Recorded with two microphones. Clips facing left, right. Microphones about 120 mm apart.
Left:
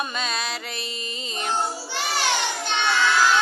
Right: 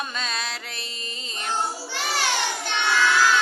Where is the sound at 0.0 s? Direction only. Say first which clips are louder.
Left 2 dB; 5° left (ahead or behind).